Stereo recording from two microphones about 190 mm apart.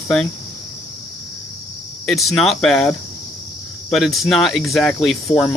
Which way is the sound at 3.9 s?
Centre (ahead or behind).